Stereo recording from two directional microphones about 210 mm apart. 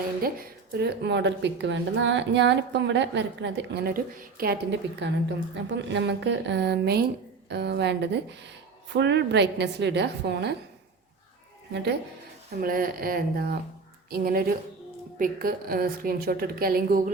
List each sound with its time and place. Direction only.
0.8 s a woman's voice: 55° right (ahead or behind)
11.7 s a woman's voice: 55° right (ahead or behind)
12.5 s a woman's voice: 45° right (ahead or behind)